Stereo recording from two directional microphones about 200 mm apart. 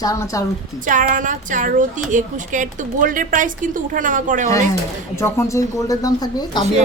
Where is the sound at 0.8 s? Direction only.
40° right (ahead or behind).